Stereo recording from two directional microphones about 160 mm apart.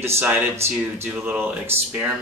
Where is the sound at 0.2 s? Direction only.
10° right (ahead or behind).